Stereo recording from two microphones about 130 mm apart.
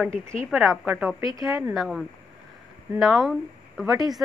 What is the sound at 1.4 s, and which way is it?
Speech, 25° right (ahead or behind).